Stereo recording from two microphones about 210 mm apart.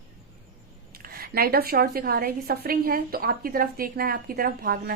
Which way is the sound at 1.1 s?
45° right (ahead or behind).